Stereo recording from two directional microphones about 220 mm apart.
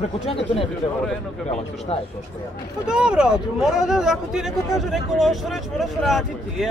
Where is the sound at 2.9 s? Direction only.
5° right (ahead or behind).